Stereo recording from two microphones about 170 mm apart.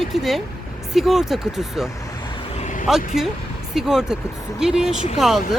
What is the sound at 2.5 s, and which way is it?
Vehicle, 45° left (ahead or behind).